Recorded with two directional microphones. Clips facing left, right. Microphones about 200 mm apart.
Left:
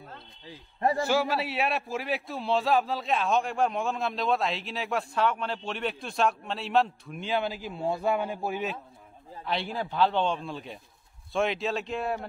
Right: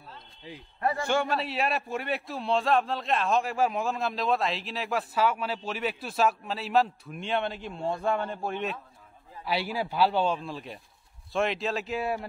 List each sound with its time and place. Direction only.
0.7 s a man's voice: 30° left (ahead or behind)
1.0 s a man's voice: 5° left (ahead or behind)
9.4 s a man's voice: 5° right (ahead or behind)